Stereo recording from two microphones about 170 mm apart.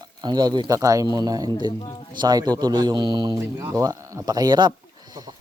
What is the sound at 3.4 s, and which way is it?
Speech, 15° right (ahead or behind).